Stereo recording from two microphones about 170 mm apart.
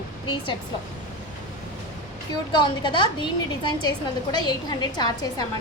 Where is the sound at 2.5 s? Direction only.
25° left (ahead or behind).